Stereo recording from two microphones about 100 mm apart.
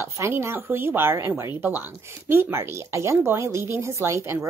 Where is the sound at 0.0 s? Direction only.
25° right (ahead or behind).